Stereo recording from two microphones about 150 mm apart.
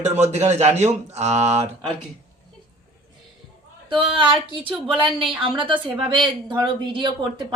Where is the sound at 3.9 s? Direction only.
35° right (ahead or behind).